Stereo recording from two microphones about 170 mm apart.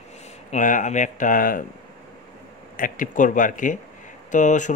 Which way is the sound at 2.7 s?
55° left (ahead or behind).